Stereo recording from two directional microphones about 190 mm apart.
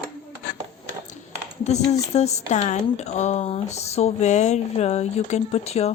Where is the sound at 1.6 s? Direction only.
35° left (ahead or behind).